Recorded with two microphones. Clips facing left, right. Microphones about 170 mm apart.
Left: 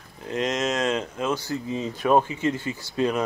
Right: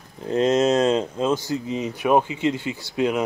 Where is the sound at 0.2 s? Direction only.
30° right (ahead or behind).